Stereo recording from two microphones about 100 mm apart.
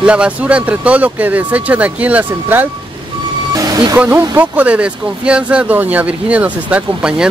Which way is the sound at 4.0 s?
15° right (ahead or behind).